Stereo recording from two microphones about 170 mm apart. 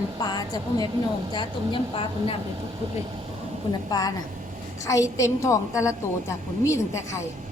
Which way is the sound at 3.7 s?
25° left (ahead or behind).